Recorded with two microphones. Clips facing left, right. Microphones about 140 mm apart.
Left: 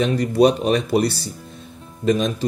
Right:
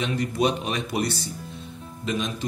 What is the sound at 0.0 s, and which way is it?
Speech, 40° left (ahead or behind).